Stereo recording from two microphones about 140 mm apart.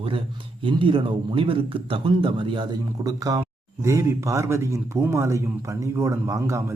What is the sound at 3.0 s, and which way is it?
Speech, 25° right (ahead or behind).